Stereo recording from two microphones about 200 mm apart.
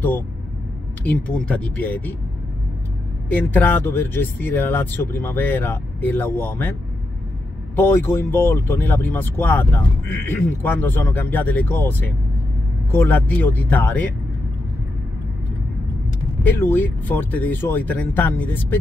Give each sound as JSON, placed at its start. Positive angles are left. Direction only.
{"t": 1.0, "sound": "speech", "side_deg": 5}
{"t": 3.3, "sound": "speech", "side_deg": 10}
{"t": 7.7, "sound": "speech", "side_deg": 10}
{"t": 16.4, "sound": "speech", "side_deg": 10}